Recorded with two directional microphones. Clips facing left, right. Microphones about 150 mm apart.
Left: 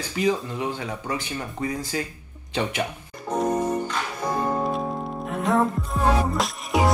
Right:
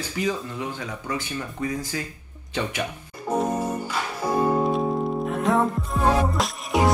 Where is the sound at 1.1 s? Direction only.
35° left (ahead or behind).